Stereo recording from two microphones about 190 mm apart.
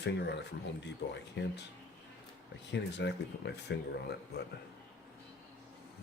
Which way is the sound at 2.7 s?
65° left (ahead or behind).